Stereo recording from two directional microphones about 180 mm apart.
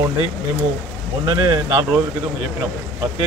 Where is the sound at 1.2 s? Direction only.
20° right (ahead or behind).